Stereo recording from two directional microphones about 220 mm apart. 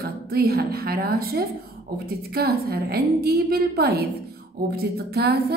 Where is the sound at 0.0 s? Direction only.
45° right (ahead or behind).